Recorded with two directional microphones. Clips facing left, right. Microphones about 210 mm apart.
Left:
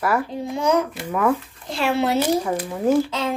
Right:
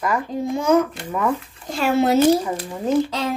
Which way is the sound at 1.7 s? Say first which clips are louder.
Right 3 dB; 45° right (ahead or behind).